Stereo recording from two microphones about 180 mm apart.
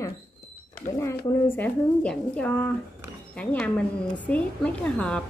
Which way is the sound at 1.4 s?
10° left (ahead or behind).